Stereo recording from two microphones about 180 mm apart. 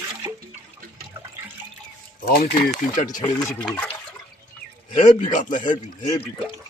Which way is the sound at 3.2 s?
20° left (ahead or behind).